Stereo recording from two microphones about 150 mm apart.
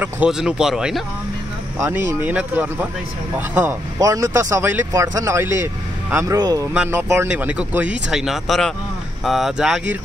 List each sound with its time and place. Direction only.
0.0 s speech: 5° right (ahead or behind); by 6.6 s 25° right (ahead or behind)
6.7 s speech: 15° right (ahead or behind)